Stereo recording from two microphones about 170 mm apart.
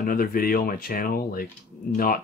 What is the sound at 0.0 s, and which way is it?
Speech, 55° left (ahead or behind).